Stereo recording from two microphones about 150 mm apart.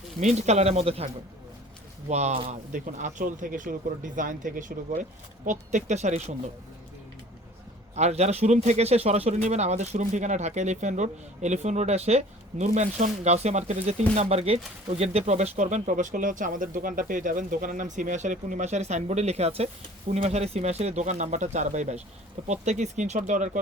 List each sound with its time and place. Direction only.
0.2 s speech: 50° right (ahead or behind)
2.7 s speech: 60° right (ahead or behind)
7.9 s speech: 45° right (ahead or behind)